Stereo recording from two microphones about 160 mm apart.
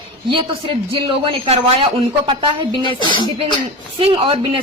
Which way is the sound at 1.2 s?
35° right (ahead or behind).